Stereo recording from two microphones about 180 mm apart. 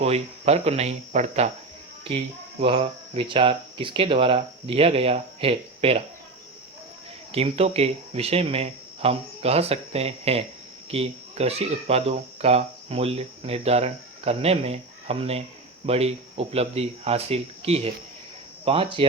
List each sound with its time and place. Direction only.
0.0 s speech: 35° right (ahead or behind)
7.3 s speech: 35° right (ahead or behind)